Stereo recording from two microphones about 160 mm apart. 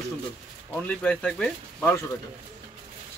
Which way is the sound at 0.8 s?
5° left (ahead or behind).